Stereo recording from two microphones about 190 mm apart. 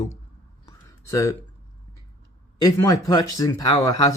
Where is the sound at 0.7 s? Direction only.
15° left (ahead or behind).